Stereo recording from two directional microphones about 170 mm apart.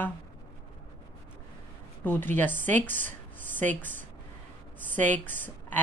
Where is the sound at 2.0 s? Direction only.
10° left (ahead or behind).